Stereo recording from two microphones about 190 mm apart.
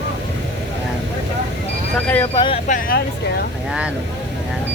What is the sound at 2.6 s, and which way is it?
Speech, 45° left (ahead or behind).